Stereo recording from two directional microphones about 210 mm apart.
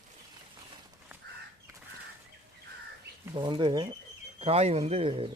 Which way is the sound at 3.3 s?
20° right (ahead or behind).